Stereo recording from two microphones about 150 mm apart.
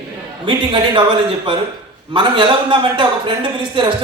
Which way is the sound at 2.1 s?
35° right (ahead or behind).